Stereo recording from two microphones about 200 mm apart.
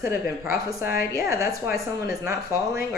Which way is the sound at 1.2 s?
15° right (ahead or behind).